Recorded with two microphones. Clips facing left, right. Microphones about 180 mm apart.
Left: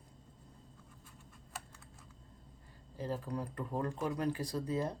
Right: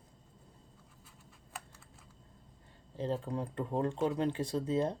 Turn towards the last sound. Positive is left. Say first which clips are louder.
# right 4 dB
turn(degrees=-25)  # may be behind; listen again after turning